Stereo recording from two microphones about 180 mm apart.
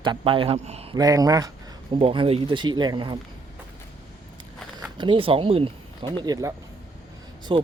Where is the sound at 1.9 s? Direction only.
30° right (ahead or behind).